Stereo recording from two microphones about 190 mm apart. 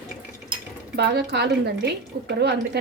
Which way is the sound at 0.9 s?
60° right (ahead or behind).